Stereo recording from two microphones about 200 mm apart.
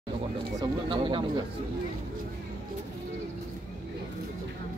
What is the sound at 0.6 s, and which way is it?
Speech, 25° right (ahead or behind).